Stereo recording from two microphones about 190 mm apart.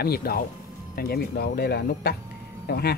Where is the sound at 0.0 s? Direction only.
55° left (ahead or behind).